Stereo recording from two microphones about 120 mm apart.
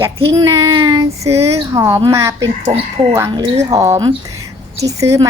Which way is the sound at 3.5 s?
25° right (ahead or behind).